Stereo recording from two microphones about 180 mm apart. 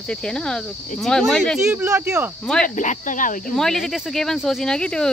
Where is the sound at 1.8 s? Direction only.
10° right (ahead or behind).